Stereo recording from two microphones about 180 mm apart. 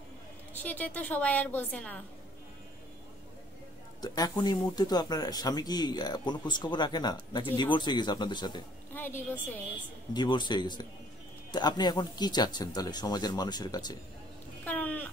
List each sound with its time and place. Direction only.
0.5 s a woman's voice: 10° left (ahead or behind)
4.0 s speech: 20° left (ahead or behind)
8.9 s a woman's voice: 10° left (ahead or behind)
10.1 s speech: 25° left (ahead or behind)
14.6 s a sound: 10° left (ahead or behind)